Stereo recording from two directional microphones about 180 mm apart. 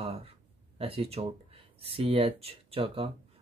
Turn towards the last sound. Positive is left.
turn(degrees=-30)  # may be behind; listen again after turning